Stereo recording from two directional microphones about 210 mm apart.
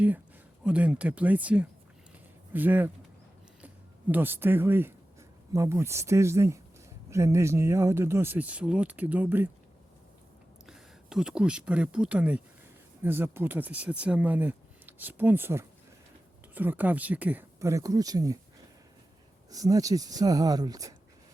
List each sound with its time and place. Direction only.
0.6 s speech: 5° right (ahead or behind)
4.1 s speech: 10° right (ahead or behind)
10.7 s speech: 5° right (ahead or behind)
19.5 s speech: 15° right (ahead or behind)